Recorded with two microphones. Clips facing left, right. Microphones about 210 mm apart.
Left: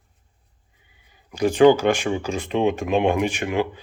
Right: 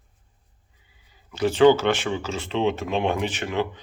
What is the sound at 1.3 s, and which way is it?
Speech, 15° left (ahead or behind).